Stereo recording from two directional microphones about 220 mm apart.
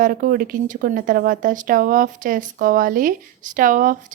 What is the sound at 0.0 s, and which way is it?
Speech, 40° right (ahead or behind).